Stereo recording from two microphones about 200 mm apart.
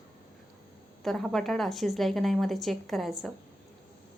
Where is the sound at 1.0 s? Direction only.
Centre (ahead or behind).